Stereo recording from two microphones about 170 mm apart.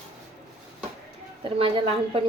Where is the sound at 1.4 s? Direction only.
30° right (ahead or behind).